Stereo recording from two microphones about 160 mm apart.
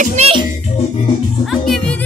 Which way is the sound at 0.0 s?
45° right (ahead or behind).